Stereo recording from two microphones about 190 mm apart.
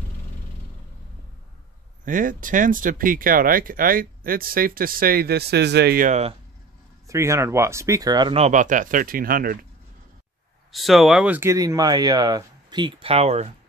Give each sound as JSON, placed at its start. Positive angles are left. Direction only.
{"t": 2.0, "sound": "speech", "side_deg": -45}
{"t": 6.0, "sound": "speech", "side_deg": -35}
{"t": 7.1, "sound": "speech", "side_deg": -15}
{"t": 10.7, "sound": "speech", "side_deg": 0}